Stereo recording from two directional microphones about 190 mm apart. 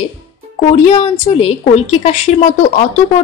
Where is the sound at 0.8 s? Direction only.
35° left (ahead or behind).